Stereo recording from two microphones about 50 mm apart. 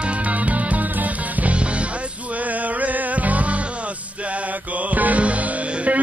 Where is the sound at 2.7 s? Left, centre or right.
Right.